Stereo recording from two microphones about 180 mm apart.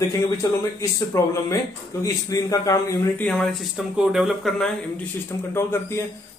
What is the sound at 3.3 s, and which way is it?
Speech, 5° left (ahead or behind).